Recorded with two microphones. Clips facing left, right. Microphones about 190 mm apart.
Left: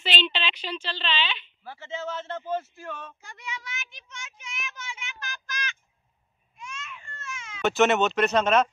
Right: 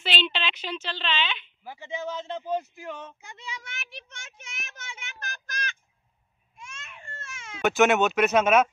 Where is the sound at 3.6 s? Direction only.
60° right (ahead or behind).